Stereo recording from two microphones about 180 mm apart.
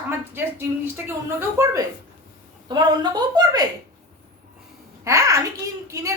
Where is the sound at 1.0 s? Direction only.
15° right (ahead or behind).